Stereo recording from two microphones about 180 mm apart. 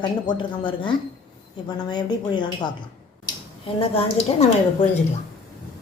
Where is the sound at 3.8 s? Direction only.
30° left (ahead or behind).